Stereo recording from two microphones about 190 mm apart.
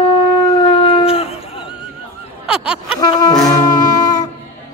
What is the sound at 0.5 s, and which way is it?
Shofar, 25° left (ahead or behind).